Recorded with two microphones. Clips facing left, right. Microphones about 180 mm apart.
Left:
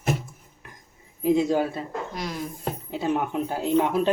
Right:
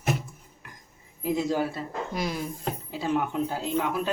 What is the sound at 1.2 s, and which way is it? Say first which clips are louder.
Speech: left 5 dB; 20° left (ahead or behind).